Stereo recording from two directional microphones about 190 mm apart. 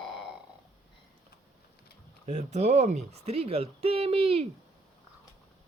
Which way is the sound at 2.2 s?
35° right (ahead or behind).